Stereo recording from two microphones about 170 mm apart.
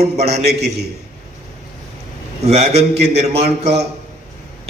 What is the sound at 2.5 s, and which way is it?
A man's voice, 40° right (ahead or behind).